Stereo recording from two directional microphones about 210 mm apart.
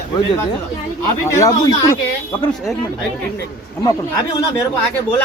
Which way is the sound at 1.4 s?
15° left (ahead or behind).